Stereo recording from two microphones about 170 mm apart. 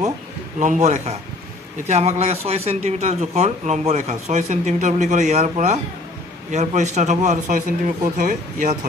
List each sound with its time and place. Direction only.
0.6 s speech: 45° right (ahead or behind)